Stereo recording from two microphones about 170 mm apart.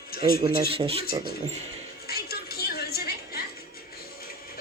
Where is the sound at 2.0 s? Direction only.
65° left (ahead or behind).